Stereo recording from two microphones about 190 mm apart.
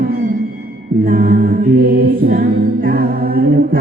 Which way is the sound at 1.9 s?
50° right (ahead or behind).